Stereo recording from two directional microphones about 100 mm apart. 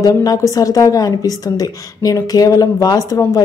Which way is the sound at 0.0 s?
40° left (ahead or behind).